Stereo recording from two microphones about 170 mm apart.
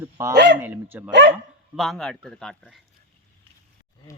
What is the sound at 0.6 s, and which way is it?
Speech, 10° right (ahead or behind).